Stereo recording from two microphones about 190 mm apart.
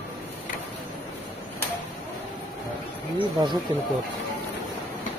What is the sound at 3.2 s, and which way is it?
Speech, 25° right (ahead or behind).